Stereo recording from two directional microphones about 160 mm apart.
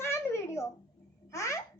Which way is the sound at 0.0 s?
15° left (ahead or behind).